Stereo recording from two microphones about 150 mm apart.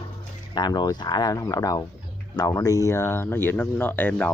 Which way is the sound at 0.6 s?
30° left (ahead or behind).